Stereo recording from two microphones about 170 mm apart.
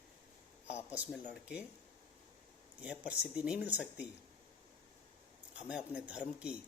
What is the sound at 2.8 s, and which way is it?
Speech, 5° right (ahead or behind).